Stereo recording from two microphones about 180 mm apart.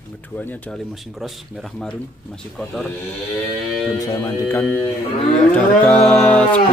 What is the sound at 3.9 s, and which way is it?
Speech, 20° left (ahead or behind).